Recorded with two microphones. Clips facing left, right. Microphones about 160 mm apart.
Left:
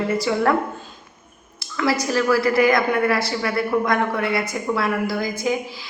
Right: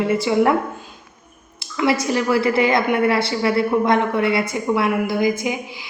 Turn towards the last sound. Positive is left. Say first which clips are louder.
# right 4 dB
turn(degrees=-20)  # may be behind; listen again after turning